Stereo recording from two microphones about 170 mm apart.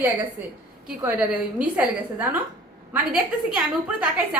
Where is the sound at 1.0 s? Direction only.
10° right (ahead or behind).